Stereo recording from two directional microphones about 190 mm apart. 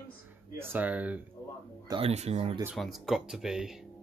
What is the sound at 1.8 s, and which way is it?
Speech, 30° right (ahead or behind).